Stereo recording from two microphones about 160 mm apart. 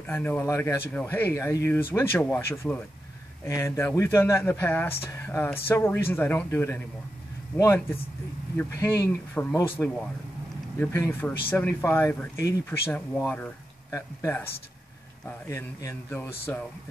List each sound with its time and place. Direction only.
0.0 s speech: 10° left (ahead or behind)